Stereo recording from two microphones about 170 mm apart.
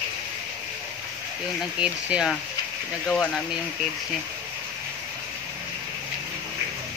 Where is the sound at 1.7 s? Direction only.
5° right (ahead or behind).